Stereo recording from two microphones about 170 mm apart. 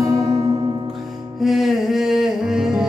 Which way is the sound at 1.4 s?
Centre (ahead or behind).